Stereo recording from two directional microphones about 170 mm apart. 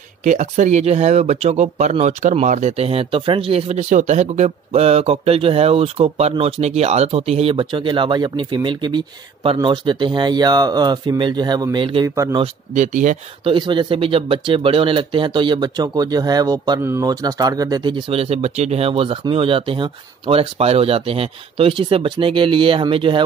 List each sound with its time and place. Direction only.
0.2 s speech: 45° right (ahead or behind); by 12.4 s 20° right (ahead or behind)
12.7 s speech: 45° right (ahead or behind)
13.4 s speech: 30° right (ahead or behind)